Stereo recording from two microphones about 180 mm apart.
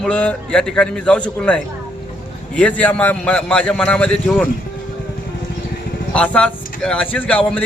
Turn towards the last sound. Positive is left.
turn(degrees=10)  # may be behind; listen again after turning